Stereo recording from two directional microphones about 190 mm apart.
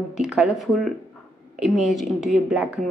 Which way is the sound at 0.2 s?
5° right (ahead or behind).